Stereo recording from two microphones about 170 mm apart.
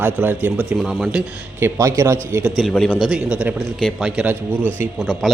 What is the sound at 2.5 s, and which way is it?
A man's voice, centre (ahead or behind).